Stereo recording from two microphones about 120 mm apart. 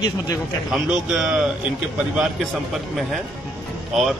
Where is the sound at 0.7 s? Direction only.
5° right (ahead or behind).